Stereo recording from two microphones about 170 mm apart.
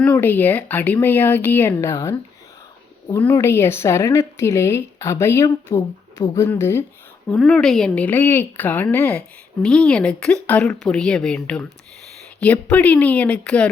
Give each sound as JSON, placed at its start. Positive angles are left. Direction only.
{"t": 0.0, "sound": "speech", "side_deg": 10}
{"t": 7.3, "sound": "speech", "side_deg": 5}